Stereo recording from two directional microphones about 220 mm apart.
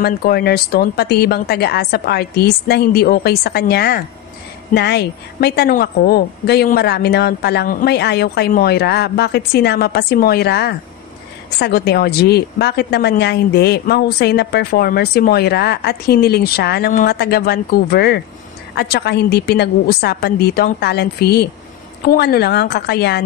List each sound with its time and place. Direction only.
0.0 s a woman's voice: 45° left (ahead or behind)